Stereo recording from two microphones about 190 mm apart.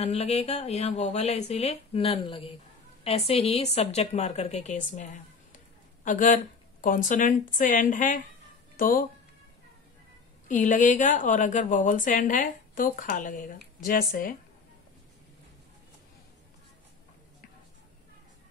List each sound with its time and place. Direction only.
0.0 s a woman's voice: 35° left (ahead or behind)
10.5 s a woman's voice: 40° left (ahead or behind)